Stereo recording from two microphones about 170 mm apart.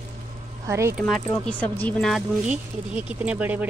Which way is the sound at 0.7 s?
15° right (ahead or behind).